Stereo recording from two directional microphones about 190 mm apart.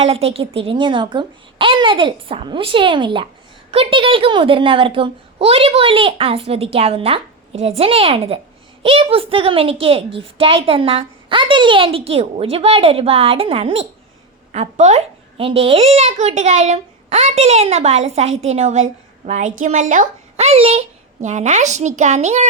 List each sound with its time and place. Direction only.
0.0 s a woman's voice: 30° right (ahead or behind)